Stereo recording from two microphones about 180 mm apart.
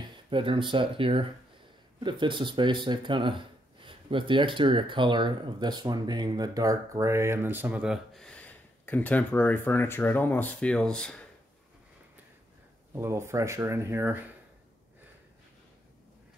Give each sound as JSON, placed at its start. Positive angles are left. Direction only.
{"t": 0.0, "sound": "speech", "side_deg": -30}
{"t": 12.9, "sound": "speech", "side_deg": -15}